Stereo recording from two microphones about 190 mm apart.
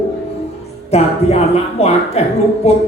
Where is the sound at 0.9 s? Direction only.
35° left (ahead or behind).